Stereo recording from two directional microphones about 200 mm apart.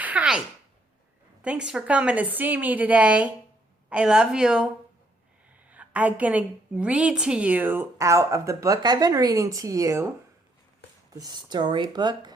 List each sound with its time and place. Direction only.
0.0 s a sound: 5° right (ahead or behind)
1.4 s a woman's voice: 5° right (ahead or behind)
5.7 s a woman's voice: 5° right (ahead or behind)
11.1 s speech: 20° right (ahead or behind)